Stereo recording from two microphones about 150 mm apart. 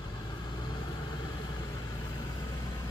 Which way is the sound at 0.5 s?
30° left (ahead or behind).